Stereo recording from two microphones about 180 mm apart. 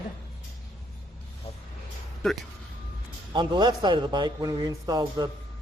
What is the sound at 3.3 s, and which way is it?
A man's voice, 25° right (ahead or behind).